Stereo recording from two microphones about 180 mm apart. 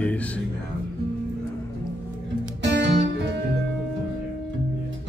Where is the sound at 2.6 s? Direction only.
75° right (ahead or behind).